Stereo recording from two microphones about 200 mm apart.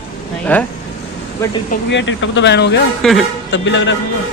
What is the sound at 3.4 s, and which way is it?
Speech, 65° left (ahead or behind).